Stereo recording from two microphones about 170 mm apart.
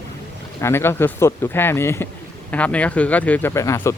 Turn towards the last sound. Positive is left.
turn(degrees=15)  # may be behind; listen again after turning